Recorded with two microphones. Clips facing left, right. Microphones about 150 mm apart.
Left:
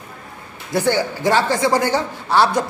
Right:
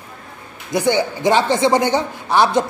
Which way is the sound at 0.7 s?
15° right (ahead or behind).